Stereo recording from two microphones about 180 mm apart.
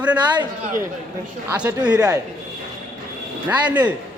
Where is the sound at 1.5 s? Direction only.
5° right (ahead or behind).